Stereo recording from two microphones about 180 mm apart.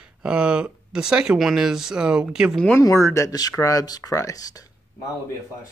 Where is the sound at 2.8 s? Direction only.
15° left (ahead or behind).